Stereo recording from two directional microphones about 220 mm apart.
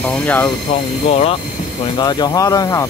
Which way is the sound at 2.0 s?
15° left (ahead or behind).